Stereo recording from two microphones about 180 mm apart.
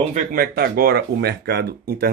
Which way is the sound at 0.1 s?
55° right (ahead or behind).